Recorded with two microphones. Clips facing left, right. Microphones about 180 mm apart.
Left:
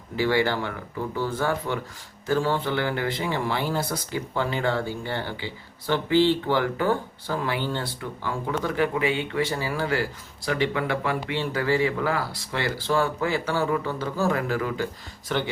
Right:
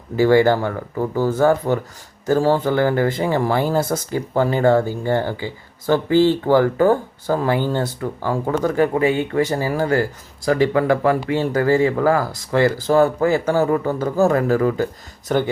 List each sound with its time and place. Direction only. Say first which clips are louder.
0.2 s speech: right 9 dB; 45° right (ahead or behind)